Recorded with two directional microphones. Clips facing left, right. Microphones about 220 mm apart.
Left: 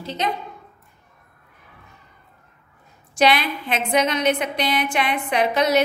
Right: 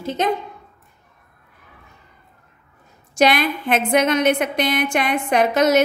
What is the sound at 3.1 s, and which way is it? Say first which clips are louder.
A woman's voice: right 2 dB; 45° right (ahead or behind).